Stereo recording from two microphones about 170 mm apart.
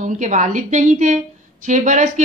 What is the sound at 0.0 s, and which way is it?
Speech, 50° right (ahead or behind).